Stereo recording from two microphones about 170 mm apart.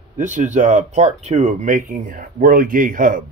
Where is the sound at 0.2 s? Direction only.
45° right (ahead or behind).